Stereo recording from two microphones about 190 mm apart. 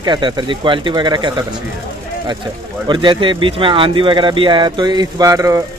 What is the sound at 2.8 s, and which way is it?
A man's voice, 25° right (ahead or behind).